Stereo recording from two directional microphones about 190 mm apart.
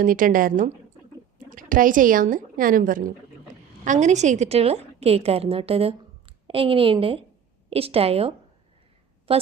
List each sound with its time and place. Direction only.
0.0 s a woman's voice: 45° right (ahead or behind)
9.3 s a woman's voice: 30° right (ahead or behind)